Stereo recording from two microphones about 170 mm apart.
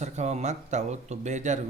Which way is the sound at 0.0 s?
40° right (ahead or behind).